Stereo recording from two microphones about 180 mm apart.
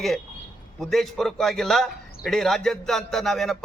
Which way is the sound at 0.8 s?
Centre (ahead or behind).